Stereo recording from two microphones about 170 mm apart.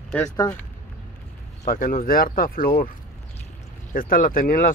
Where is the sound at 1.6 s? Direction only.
55° left (ahead or behind).